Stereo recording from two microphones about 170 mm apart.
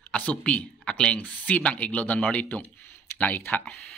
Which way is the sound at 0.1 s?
10° left (ahead or behind).